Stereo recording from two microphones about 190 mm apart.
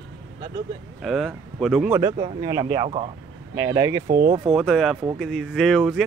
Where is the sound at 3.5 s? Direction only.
15° right (ahead or behind).